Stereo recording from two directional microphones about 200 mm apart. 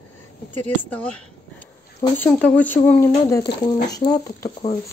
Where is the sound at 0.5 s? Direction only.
5° left (ahead or behind).